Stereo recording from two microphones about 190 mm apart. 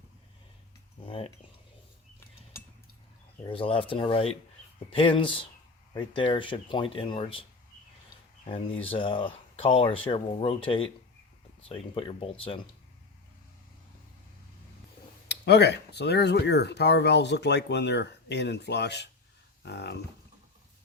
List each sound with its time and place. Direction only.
1.0 s cutlery: 30° left (ahead or behind)
3.4 s speech: 30° left (ahead or behind)
8.8 s speech: 30° left (ahead or behind)
15.3 s speech: 60° left (ahead or behind)